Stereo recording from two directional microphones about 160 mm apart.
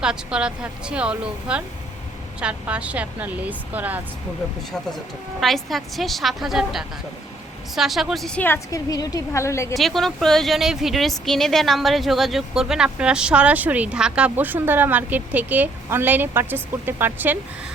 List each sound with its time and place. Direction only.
0.0 s a woman's voice: 5° right (ahead or behind)
5.4 s a woman's voice: centre (ahead or behind); by 9.7 s 20° left (ahead or behind)
9.7 s speech: centre (ahead or behind)